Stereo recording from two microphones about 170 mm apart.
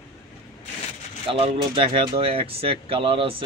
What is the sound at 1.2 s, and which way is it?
Speech, 30° right (ahead or behind).